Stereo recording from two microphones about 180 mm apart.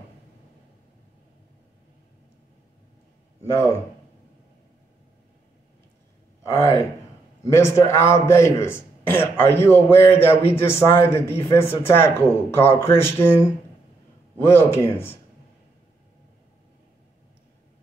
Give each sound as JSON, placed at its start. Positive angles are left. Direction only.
{"t": 3.4, "sound": "a man's voice", "side_deg": 15}
{"t": 6.4, "sound": "a man's voice", "side_deg": 15}